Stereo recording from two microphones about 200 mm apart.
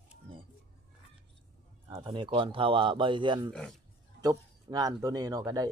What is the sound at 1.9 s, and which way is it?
A man's voice, 25° right (ahead or behind).